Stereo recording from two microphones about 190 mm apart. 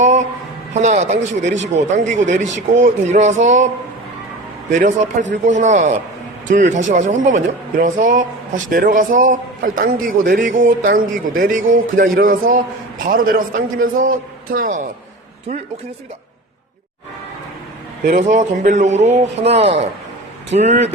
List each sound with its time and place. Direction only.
0.0 s a sound: 40° right (ahead or behind)
0.7 s a man's voice: 40° right (ahead or behind)
4.7 s a man's voice: 45° right (ahead or behind)
18.0 s a man's voice: 40° right (ahead or behind)